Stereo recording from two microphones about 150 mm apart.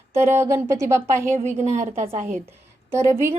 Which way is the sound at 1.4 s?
50° right (ahead or behind).